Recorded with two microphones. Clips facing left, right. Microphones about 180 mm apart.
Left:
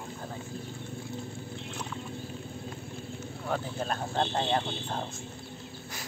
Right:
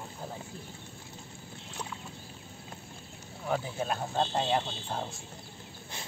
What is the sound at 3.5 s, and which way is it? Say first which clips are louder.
Speech: right 1 dB; 5° right (ahead or behind).